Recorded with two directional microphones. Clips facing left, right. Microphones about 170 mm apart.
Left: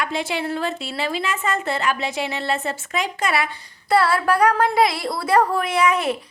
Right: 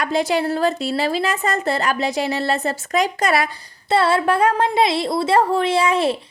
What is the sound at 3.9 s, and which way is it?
A woman's voice, 25° right (ahead or behind).